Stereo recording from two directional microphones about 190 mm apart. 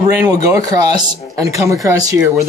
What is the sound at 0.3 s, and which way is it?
Speech, 20° right (ahead or behind).